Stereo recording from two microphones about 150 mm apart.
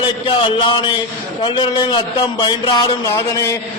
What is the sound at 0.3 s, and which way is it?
A man's voice, 35° left (ahead or behind).